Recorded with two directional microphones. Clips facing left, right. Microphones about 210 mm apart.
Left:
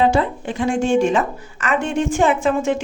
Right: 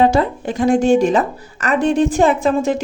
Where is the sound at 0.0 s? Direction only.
40° right (ahead or behind).